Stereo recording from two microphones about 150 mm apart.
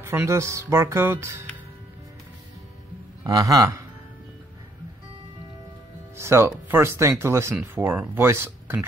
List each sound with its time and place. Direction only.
0.0 s speech: 15° right (ahead or behind)
3.3 s a man's voice: 25° right (ahead or behind)
6.1 s speech: 15° right (ahead or behind)